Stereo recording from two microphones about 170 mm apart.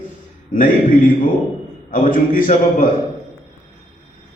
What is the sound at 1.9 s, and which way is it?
A man's voice, 50° left (ahead or behind).